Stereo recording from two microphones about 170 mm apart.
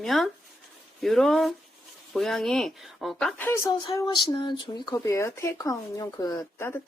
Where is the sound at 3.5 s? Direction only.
20° left (ahead or behind).